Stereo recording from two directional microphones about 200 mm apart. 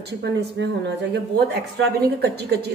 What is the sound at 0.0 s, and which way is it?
A woman's voice, 60° right (ahead or behind).